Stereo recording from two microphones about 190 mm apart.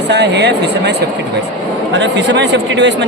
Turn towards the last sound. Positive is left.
turn(degrees=-70)  # may be behind; listen again after turning